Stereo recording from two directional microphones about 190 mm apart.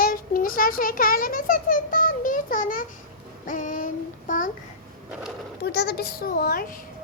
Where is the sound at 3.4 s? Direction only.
45° left (ahead or behind).